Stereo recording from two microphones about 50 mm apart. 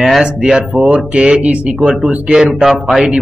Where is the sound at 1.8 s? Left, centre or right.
Centre.